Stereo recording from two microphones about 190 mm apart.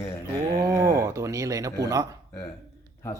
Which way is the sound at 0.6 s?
15° right (ahead or behind).